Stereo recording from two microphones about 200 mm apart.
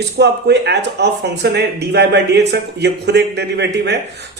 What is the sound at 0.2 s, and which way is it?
Speech, 55° right (ahead or behind).